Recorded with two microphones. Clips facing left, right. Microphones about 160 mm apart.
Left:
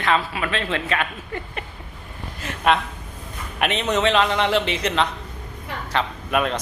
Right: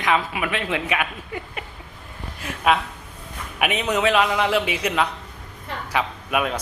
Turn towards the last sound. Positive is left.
turn(degrees=-5)  # may be behind; listen again after turning